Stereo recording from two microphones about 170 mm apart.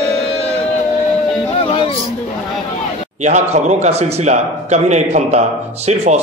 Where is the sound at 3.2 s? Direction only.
45° right (ahead or behind).